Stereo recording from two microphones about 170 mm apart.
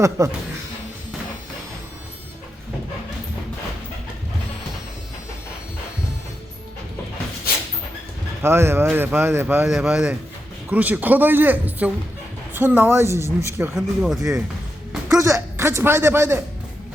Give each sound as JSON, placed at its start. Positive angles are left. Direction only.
{"t": 0.2, "sound": "speech", "side_deg": -15}
{"t": 8.4, "sound": "speech", "side_deg": -15}
{"t": 9.6, "sound": "speech", "side_deg": 0}
{"t": 13.7, "sound": "speech", "side_deg": 0}
{"t": 15.1, "sound": "speech", "side_deg": -20}